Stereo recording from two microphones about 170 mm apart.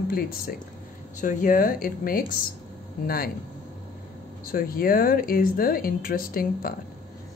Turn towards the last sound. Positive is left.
turn(degrees=60)  # may be behind; listen again after turning